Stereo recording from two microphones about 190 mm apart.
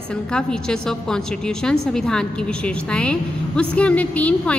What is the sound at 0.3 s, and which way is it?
A woman's voice, 5° left (ahead or behind).